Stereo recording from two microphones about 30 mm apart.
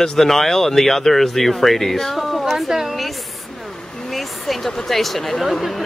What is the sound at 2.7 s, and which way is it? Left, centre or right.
Speech, centre.